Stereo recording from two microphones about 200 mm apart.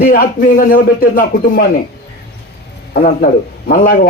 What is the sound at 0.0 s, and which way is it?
Speech, 45° left (ahead or behind).